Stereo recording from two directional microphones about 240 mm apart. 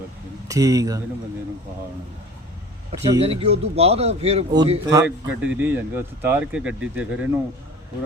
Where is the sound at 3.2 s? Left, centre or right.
Right; by 7.1 s centre.